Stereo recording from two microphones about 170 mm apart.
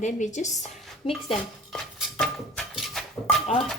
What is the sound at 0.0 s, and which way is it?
Speech, 45° left (ahead or behind).